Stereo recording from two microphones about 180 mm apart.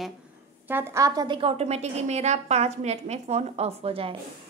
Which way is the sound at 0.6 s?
10° right (ahead or behind).